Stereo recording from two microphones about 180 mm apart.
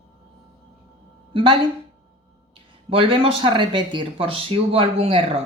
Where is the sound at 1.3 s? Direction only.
30° right (ahead or behind).